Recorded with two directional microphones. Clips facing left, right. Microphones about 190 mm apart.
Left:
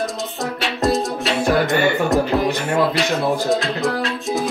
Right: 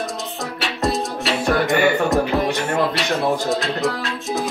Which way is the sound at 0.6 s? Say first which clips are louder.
Left 3 dB; centre (ahead or behind).